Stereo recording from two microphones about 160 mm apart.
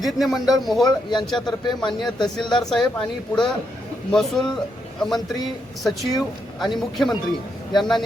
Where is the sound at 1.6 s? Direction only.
30° left (ahead or behind).